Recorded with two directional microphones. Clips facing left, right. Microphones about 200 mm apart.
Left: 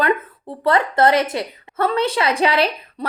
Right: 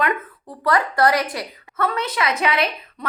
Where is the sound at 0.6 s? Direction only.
25° left (ahead or behind).